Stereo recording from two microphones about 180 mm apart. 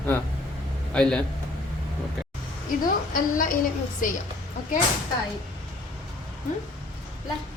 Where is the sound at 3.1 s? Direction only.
50° left (ahead or behind).